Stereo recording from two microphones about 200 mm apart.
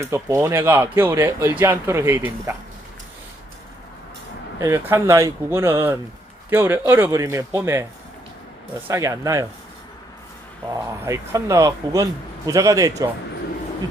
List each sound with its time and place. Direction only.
0.0 s speech: 15° right (ahead or behind)
4.6 s speech: 15° right (ahead or behind)
8.9 s speech: 15° right (ahead or behind)
10.7 s speech: 15° right (ahead or behind)